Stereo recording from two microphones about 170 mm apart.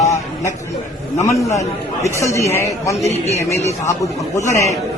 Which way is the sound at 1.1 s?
15° left (ahead or behind).